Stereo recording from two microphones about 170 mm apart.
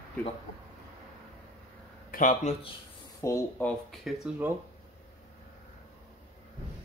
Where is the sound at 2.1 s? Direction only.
50° left (ahead or behind).